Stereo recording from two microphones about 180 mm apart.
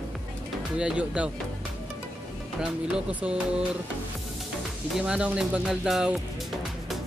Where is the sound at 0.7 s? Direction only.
5° right (ahead or behind).